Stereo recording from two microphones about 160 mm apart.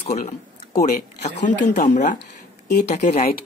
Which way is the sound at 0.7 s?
50° left (ahead or behind).